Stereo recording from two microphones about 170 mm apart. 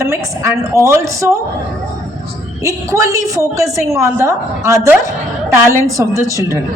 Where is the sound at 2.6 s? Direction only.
20° right (ahead or behind).